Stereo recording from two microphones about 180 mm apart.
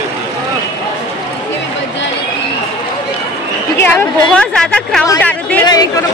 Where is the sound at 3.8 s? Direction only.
10° left (ahead or behind).